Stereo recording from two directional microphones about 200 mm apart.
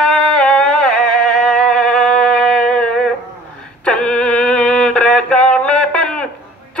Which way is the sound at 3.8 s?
5° left (ahead or behind).